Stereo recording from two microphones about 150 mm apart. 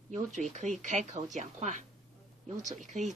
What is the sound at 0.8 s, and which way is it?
A woman's voice, 55° right (ahead or behind).